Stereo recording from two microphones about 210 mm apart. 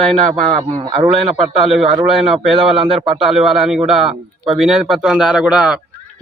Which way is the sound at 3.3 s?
Centre (ahead or behind).